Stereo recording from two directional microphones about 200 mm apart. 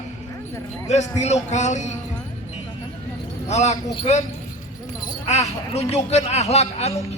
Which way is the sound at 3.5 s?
35° left (ahead or behind).